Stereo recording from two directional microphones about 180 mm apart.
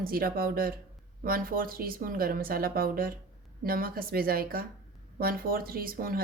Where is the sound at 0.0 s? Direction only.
55° right (ahead or behind).